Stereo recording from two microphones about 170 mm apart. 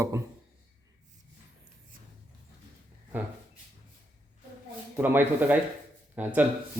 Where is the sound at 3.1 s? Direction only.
10° right (ahead or behind).